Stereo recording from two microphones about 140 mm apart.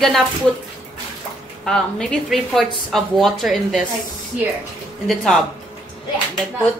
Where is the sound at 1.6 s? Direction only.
5° left (ahead or behind).